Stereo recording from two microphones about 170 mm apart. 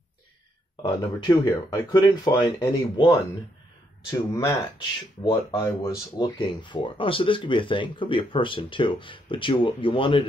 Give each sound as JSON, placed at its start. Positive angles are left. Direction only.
{"t": 0.8, "sound": "speech", "side_deg": 25}
{"t": 4.1, "sound": "speech", "side_deg": 20}